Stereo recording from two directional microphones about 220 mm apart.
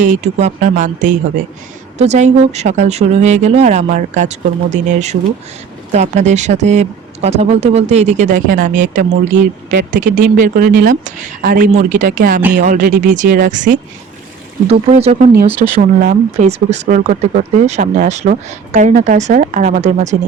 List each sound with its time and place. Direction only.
0.0 s speech: 30° right (ahead or behind)